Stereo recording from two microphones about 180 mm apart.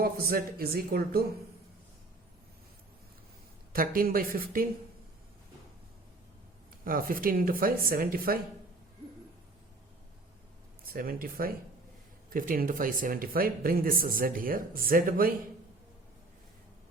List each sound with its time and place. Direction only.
0.0 s speech: 55° right (ahead or behind)
3.7 s speech: 55° right (ahead or behind)
6.8 s speech: 50° right (ahead or behind)
10.8 s speech: 55° right (ahead or behind)